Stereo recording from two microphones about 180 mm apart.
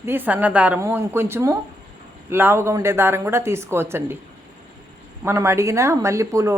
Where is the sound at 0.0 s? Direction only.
10° right (ahead or behind).